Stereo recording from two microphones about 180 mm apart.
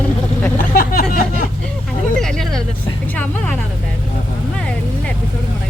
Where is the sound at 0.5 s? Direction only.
50° left (ahead or behind).